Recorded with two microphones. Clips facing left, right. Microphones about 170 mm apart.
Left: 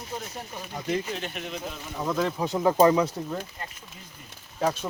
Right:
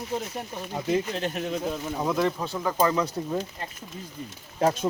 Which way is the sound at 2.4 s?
20° left (ahead or behind).